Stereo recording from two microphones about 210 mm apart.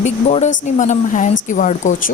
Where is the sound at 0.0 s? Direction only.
35° left (ahead or behind).